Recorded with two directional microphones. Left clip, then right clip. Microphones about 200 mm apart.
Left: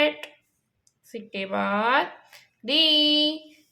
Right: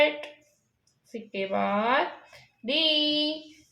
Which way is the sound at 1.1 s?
35° left (ahead or behind).